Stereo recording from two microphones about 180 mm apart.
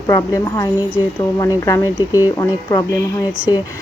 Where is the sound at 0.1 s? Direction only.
20° left (ahead or behind).